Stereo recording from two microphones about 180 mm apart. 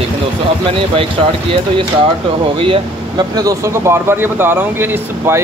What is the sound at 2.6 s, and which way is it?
Speech, 25° right (ahead or behind).